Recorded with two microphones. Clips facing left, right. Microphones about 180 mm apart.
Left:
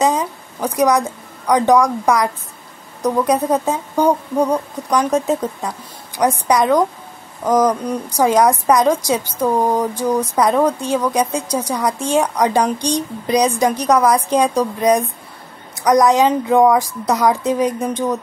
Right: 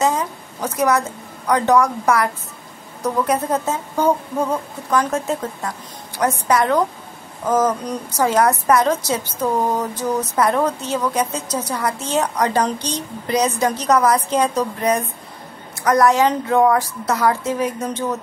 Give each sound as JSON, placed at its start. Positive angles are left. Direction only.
{"t": 0.0, "sound": "a woman's voice", "side_deg": 15}